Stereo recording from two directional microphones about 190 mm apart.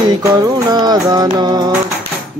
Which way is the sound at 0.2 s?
20° right (ahead or behind).